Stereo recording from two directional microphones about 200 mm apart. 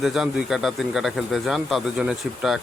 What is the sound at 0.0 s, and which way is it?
Speech, centre (ahead or behind).